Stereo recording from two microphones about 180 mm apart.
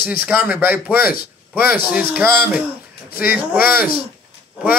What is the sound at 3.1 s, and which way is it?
Speech, 55° left (ahead or behind).